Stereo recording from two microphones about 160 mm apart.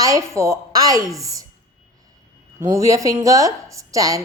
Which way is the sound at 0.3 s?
15° right (ahead or behind).